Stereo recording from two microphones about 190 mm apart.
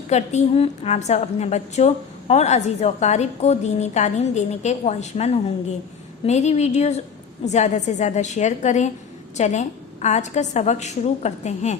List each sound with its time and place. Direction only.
0.1 s a woman's voice: 35° left (ahead or behind)